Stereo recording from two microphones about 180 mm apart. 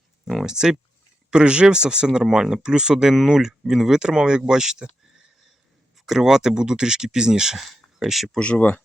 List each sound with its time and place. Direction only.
0.3 s speech: centre (ahead or behind)
6.1 s speech: 5° right (ahead or behind)